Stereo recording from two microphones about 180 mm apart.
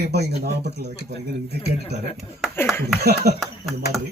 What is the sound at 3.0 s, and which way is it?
Speech, 60° right (ahead or behind).